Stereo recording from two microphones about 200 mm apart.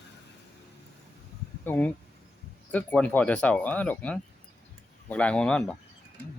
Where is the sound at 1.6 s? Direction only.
10° left (ahead or behind).